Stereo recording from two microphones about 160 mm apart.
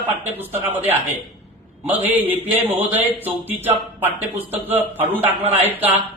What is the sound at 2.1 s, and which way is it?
Speech, 10° right (ahead or behind).